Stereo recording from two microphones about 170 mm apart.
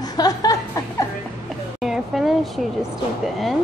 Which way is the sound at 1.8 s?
Centre (ahead or behind).